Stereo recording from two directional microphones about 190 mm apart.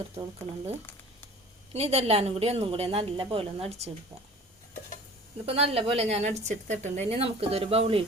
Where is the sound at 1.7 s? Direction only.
35° right (ahead or behind).